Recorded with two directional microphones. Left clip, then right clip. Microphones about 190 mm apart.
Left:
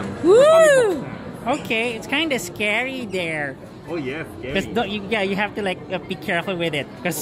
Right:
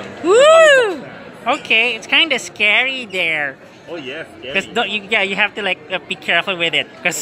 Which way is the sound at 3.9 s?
45° right (ahead or behind).